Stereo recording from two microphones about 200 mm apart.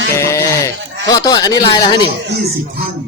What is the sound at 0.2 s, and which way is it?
Sheep, 15° left (ahead or behind).